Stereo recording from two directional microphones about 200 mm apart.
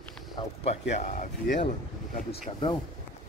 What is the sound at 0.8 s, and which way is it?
Speech, 35° left (ahead or behind).